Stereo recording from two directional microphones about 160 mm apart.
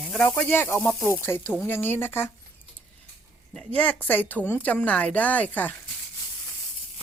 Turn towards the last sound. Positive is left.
turn(degrees=10)  # may be behind; listen again after turning